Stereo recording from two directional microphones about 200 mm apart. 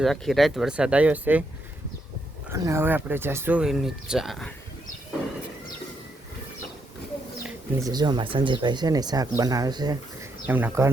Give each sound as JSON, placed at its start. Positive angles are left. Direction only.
{"t": 0.0, "sound": "speech", "side_deg": 0}
{"t": 2.5, "sound": "speech", "side_deg": -15}
{"t": 7.8, "sound": "speech", "side_deg": -20}
{"t": 10.4, "sound": "speech", "side_deg": -10}